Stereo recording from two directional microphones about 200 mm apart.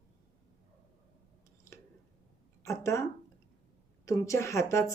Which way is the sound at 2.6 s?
15° left (ahead or behind).